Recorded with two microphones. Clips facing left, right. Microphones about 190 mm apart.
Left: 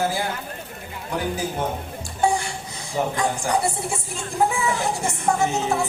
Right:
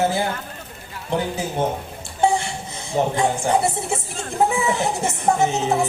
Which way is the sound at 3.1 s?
25° right (ahead or behind).